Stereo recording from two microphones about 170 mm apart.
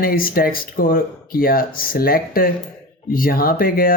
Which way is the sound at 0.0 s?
60° left (ahead or behind).